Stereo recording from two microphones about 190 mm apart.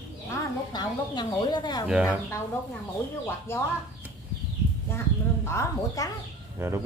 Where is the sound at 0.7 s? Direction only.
25° left (ahead or behind).